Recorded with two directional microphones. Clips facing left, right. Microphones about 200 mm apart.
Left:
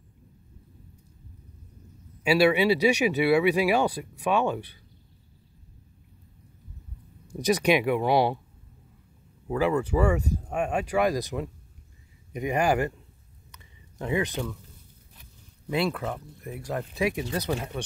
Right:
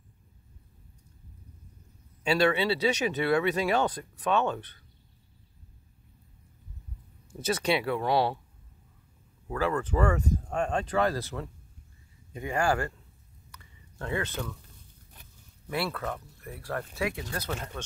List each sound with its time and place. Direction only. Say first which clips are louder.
2.2 s speech: left 4 dB; 10° left (ahead or behind)
7.3 s speech: left 5 dB; 15° left (ahead or behind)
9.5 s speech: left 4 dB; 15° left (ahead or behind)
13.5 s a sound: even; 15° left (ahead or behind)
15.7 s speech: left 4 dB; 15° left (ahead or behind)